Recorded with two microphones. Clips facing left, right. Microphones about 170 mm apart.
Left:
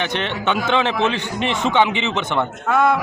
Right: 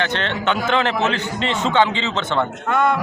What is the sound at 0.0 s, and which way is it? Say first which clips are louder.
A man's voice: right 1 dB; 15° left (ahead or behind).